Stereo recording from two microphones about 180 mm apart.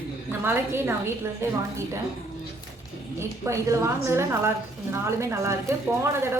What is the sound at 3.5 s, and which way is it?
A woman's voice, 15° right (ahead or behind).